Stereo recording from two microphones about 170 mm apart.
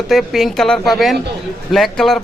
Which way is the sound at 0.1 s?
Centre (ahead or behind).